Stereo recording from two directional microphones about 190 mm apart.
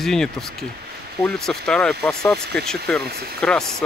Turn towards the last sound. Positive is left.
turn(degrees=5)  # may be behind; listen again after turning